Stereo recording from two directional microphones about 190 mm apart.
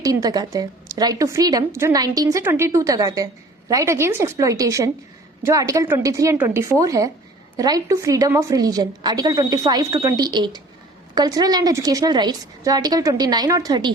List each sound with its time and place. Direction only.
0.0 s a woman's voice: 20° right (ahead or behind)